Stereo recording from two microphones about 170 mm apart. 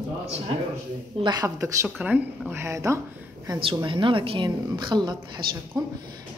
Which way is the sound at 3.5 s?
30° right (ahead or behind).